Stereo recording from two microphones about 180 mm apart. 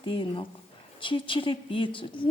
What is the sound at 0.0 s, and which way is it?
A woman's voice, 30° left (ahead or behind).